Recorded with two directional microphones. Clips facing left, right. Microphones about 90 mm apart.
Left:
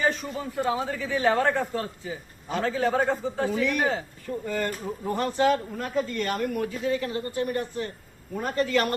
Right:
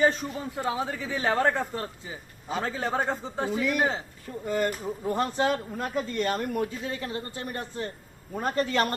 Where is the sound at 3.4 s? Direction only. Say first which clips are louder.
Right 1 dB; 20° right (ahead or behind).